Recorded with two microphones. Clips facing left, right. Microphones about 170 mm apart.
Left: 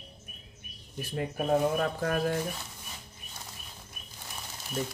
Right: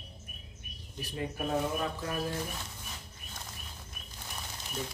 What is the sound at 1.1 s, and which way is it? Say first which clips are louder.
Speech: left 5 dB; 55° left (ahead or behind).